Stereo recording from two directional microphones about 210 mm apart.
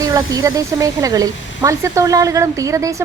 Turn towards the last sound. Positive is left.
turn(degrees=-15)  # may be behind; listen again after turning